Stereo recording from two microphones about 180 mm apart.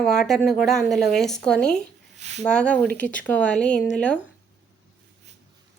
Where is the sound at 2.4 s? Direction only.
5° left (ahead or behind).